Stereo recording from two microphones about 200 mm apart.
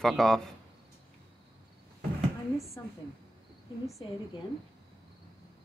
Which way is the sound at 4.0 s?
25° left (ahead or behind).